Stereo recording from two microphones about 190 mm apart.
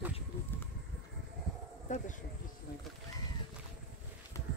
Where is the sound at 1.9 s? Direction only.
40° left (ahead or behind).